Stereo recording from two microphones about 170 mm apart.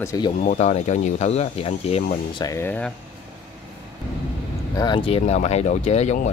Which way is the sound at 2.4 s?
15° left (ahead or behind).